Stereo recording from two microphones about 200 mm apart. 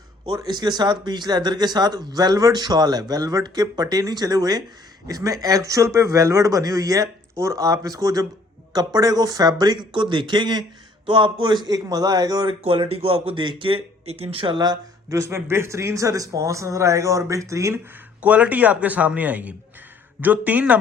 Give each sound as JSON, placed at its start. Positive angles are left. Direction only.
{"t": 0.3, "sound": "speech", "side_deg": -20}